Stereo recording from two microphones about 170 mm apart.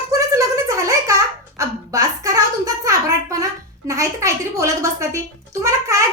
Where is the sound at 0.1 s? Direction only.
20° right (ahead or behind).